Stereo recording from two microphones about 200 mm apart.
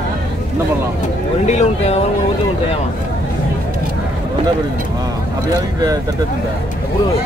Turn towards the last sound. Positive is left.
turn(degrees=-20)  # may be behind; listen again after turning